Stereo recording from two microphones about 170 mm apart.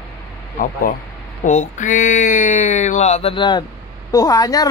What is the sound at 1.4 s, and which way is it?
Speech, 45° left (ahead or behind).